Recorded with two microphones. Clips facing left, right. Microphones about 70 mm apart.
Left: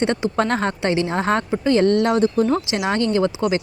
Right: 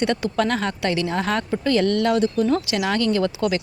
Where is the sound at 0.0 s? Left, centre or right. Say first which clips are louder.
Left 1 dB; left.